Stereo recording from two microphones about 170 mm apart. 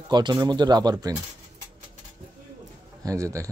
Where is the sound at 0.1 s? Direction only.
25° right (ahead or behind).